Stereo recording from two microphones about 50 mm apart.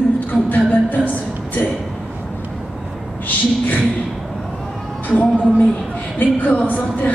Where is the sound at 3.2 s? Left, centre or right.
Left.